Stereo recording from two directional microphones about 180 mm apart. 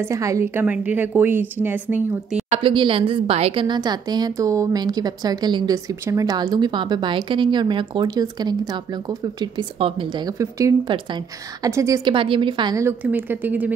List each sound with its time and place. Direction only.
0.0 s a woman's voice: 15° right (ahead or behind)
2.5 s speech: 30° right (ahead or behind); by 13.7 s 10° right (ahead or behind)